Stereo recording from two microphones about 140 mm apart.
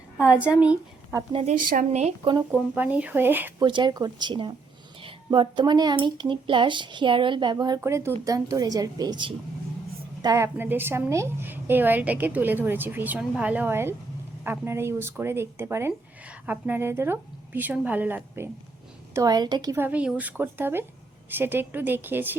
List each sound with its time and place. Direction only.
0.3 s a woman's voice: 10° right (ahead or behind)
1.3 s speech: 40° right (ahead or behind)
1.6 s speech: 70° right (ahead or behind); by 2.1 s 55° right (ahead or behind)
2.7 s a woman's voice: 10° right (ahead or behind)
3.6 s speech: 35° right (ahead or behind)
7.8 s a woman's voice: 20° right (ahead or behind)
10.2 s a woman's voice: 20° right (ahead or behind)
19.1 s a woman's voice: 25° right (ahead or behind)
19.7 s a woman's voice: 10° right (ahead or behind)